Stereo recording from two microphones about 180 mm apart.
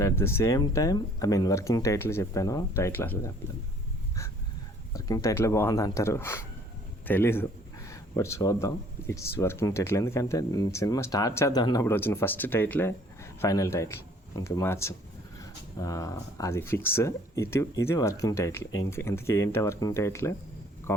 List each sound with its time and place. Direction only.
0.0 s speech: 15° left (ahead or behind)
4.9 s speech: 20° left (ahead or behind)